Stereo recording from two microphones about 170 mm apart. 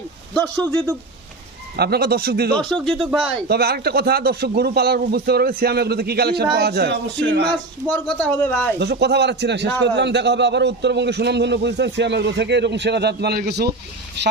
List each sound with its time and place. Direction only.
1.7 s a man's voice: 70° right (ahead or behind)
2.6 s speech: 5° left (ahead or behind)
3.5 s a man's voice: 70° right (ahead or behind); by 7.4 s 85° right
8.0 s speech: 5° left (ahead or behind)
8.8 s a man's voice: 80° right